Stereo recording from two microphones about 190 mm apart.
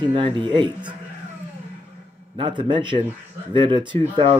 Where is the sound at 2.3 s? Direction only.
25° right (ahead or behind).